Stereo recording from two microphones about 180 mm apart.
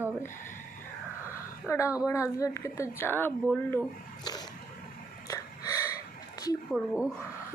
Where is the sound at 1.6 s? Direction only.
15° left (ahead or behind).